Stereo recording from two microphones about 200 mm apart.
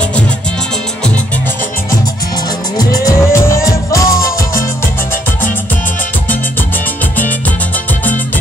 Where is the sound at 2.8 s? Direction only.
15° left (ahead or behind).